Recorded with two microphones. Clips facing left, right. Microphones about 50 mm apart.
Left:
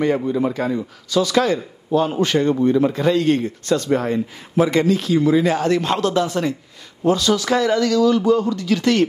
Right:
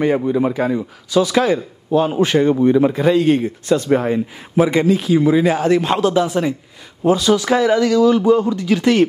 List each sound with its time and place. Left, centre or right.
0.0 s speech: centre